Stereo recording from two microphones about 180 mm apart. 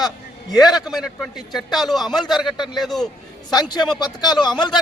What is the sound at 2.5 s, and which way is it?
Speech, 25° left (ahead or behind).